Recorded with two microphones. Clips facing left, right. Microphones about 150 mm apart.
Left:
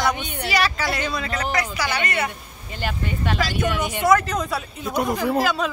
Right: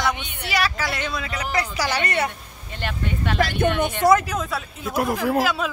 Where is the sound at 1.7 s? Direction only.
40° right (ahead or behind).